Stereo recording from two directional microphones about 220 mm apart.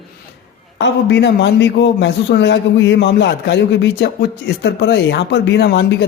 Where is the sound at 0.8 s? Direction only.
55° left (ahead or behind).